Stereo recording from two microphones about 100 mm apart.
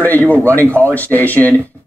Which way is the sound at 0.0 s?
15° left (ahead or behind).